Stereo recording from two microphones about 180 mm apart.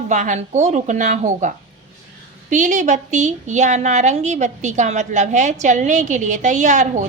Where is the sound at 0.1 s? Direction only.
40° right (ahead or behind).